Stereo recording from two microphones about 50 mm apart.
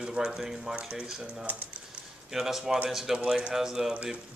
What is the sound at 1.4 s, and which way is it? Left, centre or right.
Speech, right.